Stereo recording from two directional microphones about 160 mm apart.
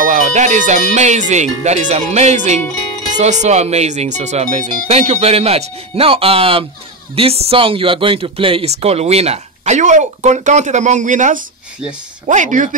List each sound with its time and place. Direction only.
0.0 s speech: 50° right (ahead or behind)